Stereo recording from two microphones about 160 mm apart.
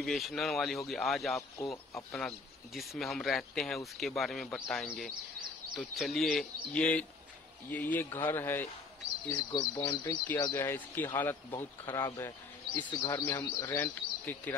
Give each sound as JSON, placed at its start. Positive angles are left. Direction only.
{"t": 0.0, "sound": "speech", "side_deg": 0}